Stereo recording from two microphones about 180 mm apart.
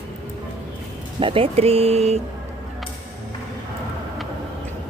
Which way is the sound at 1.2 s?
30° right (ahead or behind).